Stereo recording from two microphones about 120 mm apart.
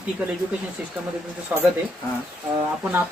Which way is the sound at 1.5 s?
15° right (ahead or behind).